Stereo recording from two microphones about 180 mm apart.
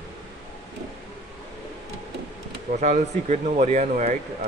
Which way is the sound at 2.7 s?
40° right (ahead or behind).